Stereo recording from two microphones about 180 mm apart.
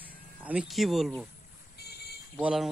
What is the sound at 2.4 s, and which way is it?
Speech, 5° right (ahead or behind).